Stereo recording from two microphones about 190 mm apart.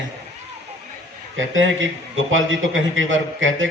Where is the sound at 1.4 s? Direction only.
85° right.